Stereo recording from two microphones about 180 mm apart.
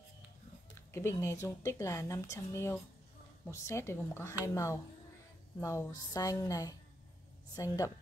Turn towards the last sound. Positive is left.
turn(degrees=20)  # may be behind; listen again after turning